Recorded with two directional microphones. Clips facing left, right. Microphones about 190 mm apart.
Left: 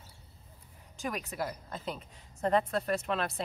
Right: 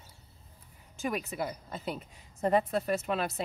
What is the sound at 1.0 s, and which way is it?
A woman's voice, centre (ahead or behind).